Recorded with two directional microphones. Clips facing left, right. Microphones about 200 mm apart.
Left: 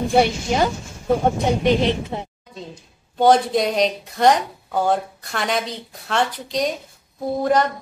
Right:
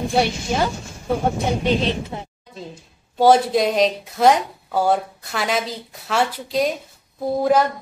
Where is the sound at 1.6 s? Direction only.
20° left (ahead or behind).